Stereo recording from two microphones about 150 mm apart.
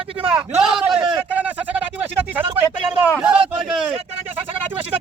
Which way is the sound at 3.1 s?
5° right (ahead or behind).